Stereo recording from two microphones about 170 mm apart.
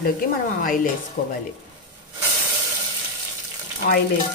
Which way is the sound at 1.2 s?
50° left (ahead or behind).